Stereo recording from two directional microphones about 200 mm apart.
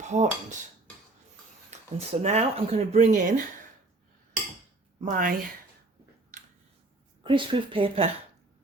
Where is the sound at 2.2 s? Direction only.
35° right (ahead or behind).